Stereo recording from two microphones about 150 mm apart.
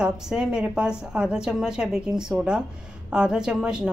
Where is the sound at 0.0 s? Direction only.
5° right (ahead or behind).